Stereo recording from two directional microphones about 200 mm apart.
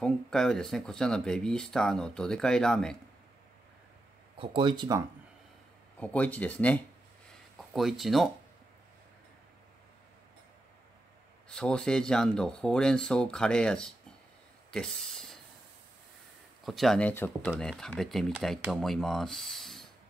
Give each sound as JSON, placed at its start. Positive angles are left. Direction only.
{"t": 0.0, "sound": "speech", "side_deg": 5}
{"t": 4.4, "sound": "speech", "side_deg": -25}
{"t": 5.9, "sound": "speech", "side_deg": 5}
{"t": 11.4, "sound": "speech", "side_deg": 5}
{"t": 14.7, "sound": "a sound", "side_deg": 5}
{"t": 16.6, "sound": "speech", "side_deg": 0}